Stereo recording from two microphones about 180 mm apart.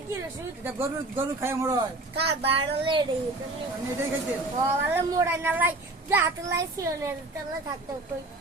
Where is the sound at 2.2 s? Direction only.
30° right (ahead or behind).